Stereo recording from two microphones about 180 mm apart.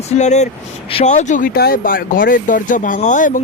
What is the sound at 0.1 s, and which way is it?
Speech, 40° left (ahead or behind).